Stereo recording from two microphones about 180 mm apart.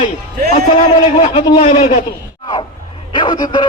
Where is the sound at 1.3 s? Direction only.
25° left (ahead or behind).